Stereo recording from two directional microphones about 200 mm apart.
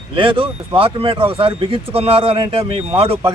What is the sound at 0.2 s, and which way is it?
Speech, 25° right (ahead or behind).